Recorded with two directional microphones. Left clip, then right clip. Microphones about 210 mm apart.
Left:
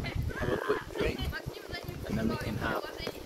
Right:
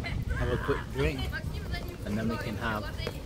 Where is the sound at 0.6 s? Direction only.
50° right (ahead or behind).